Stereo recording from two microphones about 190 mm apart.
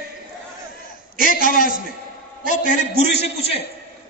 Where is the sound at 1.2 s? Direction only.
45° left (ahead or behind).